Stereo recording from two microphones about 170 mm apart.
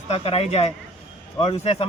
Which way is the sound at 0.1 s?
35° left (ahead or behind).